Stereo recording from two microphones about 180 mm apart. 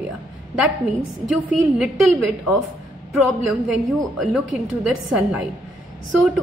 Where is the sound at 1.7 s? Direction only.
5° right (ahead or behind).